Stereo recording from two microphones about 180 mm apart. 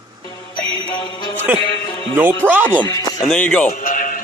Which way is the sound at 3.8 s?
50° left (ahead or behind).